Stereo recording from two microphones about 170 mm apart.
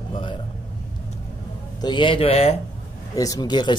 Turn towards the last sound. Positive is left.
turn(degrees=25)  # may be behind; listen again after turning